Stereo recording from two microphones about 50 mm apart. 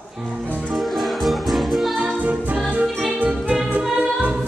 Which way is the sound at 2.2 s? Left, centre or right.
Right.